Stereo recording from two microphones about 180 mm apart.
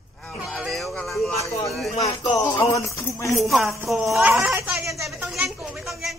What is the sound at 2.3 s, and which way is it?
Speech, 15° left (ahead or behind).